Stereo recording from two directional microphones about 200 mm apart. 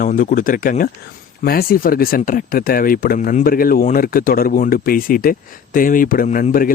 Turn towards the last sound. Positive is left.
turn(degrees=45)  # may be behind; listen again after turning